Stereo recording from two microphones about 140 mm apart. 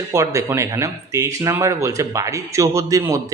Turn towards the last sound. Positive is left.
turn(degrees=-20)  # may be behind; listen again after turning